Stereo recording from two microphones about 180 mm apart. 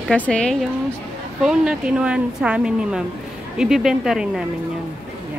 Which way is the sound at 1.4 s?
5° right (ahead or behind).